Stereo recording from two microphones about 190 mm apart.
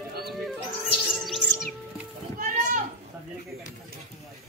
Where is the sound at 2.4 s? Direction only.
40° right (ahead or behind).